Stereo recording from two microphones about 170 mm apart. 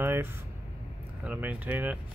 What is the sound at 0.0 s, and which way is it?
Vehicle, 15° right (ahead or behind).